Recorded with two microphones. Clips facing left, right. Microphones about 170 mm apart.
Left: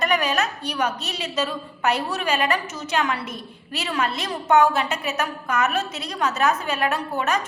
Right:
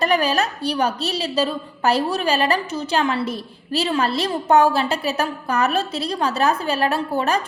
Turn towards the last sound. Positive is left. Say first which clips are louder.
# right 3 dB
turn(degrees=-30)  # may be behind; listen again after turning